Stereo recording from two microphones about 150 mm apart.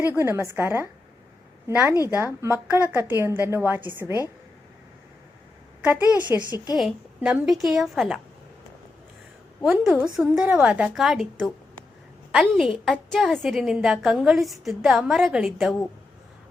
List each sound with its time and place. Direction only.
0.1 s a woman's voice: 15° right (ahead or behind)
5.8 s a woman's voice: 10° right (ahead or behind)
9.6 s a woman's voice: 10° right (ahead or behind)